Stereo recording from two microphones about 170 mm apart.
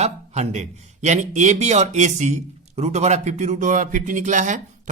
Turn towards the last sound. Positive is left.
turn(degrees=-45)  # may be behind; listen again after turning